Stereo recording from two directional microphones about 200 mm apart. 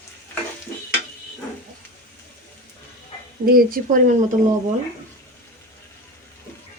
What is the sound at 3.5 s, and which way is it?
Speech, 45° right (ahead or behind).